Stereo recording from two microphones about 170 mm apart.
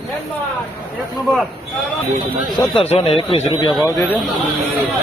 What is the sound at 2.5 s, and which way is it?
Speech, 35° left (ahead or behind).